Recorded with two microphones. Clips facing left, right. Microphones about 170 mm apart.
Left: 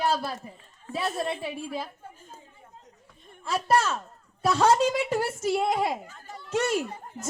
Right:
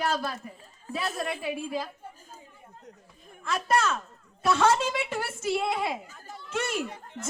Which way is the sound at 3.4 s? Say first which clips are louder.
Left 2 dB; 30° left (ahead or behind).